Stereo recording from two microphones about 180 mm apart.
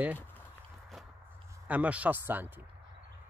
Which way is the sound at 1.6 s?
10° right (ahead or behind).